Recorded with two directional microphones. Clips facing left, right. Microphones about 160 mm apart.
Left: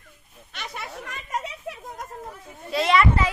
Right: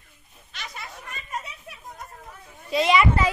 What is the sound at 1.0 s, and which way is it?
Speech, 90° left.